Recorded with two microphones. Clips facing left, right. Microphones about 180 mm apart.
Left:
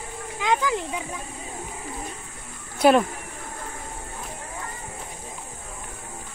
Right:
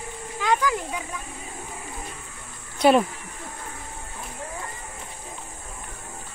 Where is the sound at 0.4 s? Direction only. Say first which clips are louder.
Even; 20° left (ahead or behind).